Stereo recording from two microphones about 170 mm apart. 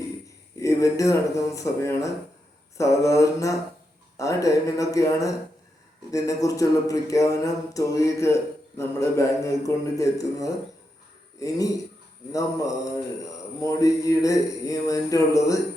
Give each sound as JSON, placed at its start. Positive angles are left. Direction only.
{"t": 0.6, "sound": "a man's voice", "side_deg": 20}